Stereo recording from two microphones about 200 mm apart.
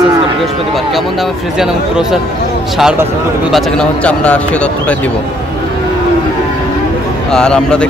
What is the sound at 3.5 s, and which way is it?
Speech, centre (ahead or behind).